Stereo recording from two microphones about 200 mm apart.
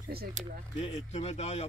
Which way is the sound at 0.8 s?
30° left (ahead or behind).